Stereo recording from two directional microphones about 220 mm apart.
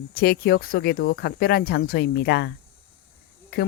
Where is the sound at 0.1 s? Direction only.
45° left (ahead or behind).